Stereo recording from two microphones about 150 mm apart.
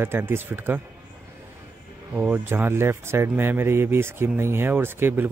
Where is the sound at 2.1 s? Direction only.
10° right (ahead or behind).